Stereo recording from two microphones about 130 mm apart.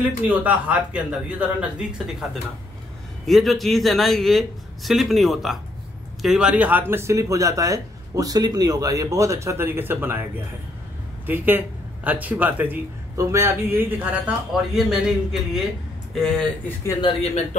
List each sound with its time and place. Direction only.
0.2 s speech: 10° right (ahead or behind)
3.3 s a man's voice: centre (ahead or behind); by 10.2 s 15° right (ahead or behind)
11.2 s a man's voice: 15° right (ahead or behind)
14.5 s a man's voice: centre (ahead or behind)
16.2 s a man's voice: 5° left (ahead or behind)
17.0 s speech: 55° left (ahead or behind)